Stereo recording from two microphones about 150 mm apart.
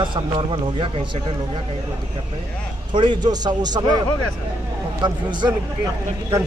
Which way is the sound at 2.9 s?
30° right (ahead or behind).